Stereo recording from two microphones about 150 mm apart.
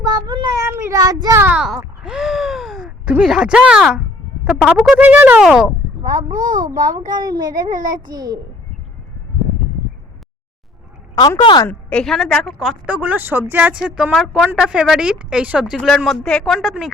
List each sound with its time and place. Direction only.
0.0 s cat: 25° right (ahead or behind)
0.6 s child singing: 15° right (ahead or behind)
1.4 s speech: 10° right (ahead or behind)
2.0 s gasp: 5° right (ahead or behind)
3.1 s a woman's voice: 5° right (ahead or behind)
6.3 s speech: 65° right (ahead or behind)
7.1 s a child's voice: 25° right (ahead or behind)
11.1 s a woman's voice: 25° left (ahead or behind)
11.7 s a woman's voice: 10° left (ahead or behind)